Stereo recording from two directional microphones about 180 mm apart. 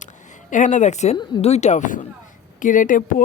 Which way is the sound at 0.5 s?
45° left (ahead or behind).